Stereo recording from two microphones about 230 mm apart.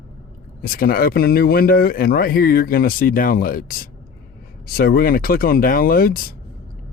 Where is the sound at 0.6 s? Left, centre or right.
Left.